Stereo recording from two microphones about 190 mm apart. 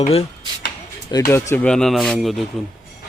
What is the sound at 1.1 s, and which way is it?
Speech, 15° left (ahead or behind).